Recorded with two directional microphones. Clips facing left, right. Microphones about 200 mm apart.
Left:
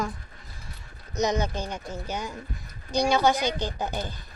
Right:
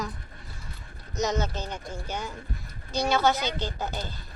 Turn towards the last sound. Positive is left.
turn(degrees=15)  # may be behind; listen again after turning